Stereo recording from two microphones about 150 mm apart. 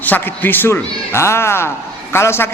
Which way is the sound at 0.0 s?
10° left (ahead or behind).